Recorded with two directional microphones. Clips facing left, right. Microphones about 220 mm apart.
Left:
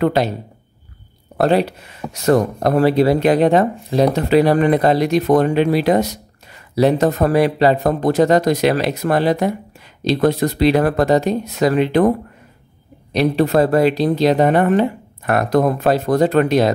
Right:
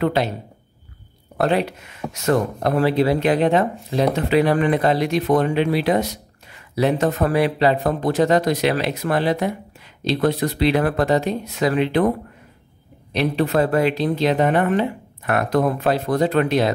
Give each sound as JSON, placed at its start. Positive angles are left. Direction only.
{"t": 0.0, "sound": "speech", "side_deg": 45}
{"t": 1.4, "sound": "speech", "side_deg": 35}
{"t": 13.1, "sound": "speech", "side_deg": 40}